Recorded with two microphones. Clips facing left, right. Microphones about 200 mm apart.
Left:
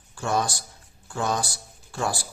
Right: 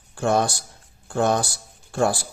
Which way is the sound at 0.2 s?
60° right (ahead or behind).